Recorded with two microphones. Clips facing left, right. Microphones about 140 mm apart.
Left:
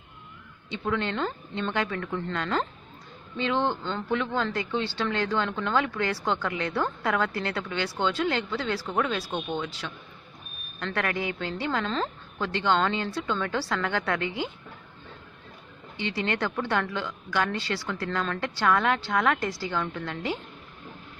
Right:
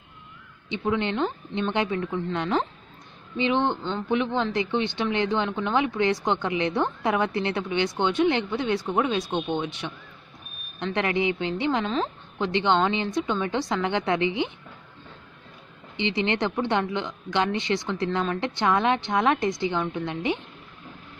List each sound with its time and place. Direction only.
0.7 s a woman's voice: 20° right (ahead or behind)
11.8 s speech: 5° right (ahead or behind)
12.5 s a woman's voice: 20° right (ahead or behind)
16.0 s a woman's voice: 20° right (ahead or behind)